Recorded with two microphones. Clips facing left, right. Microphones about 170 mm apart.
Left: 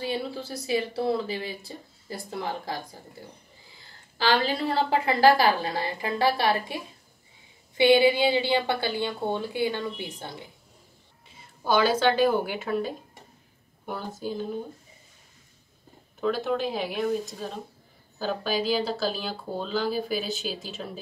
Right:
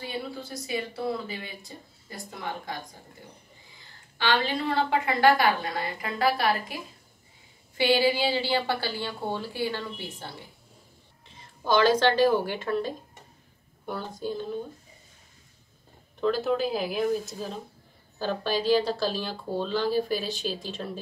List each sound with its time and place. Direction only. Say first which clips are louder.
0.0 s speech: left 4 dB; 30° left (ahead or behind)
4.2 s a woman's voice: left 2 dB; 35° left (ahead or behind); by 14.6 s 5° left (ahead or behind)
16.2 s speech: right 1 dB; centre (ahead or behind)